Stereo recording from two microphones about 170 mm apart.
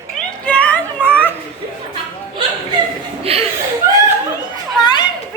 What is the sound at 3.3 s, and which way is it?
Speech, 35° right (ahead or behind).